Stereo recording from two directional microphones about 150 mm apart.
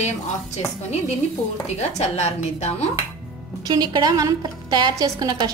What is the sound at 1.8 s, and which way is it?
A woman's voice, 45° left (ahead or behind).